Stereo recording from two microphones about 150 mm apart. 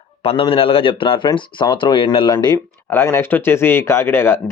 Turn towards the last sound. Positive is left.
turn(degrees=15)  # may be behind; listen again after turning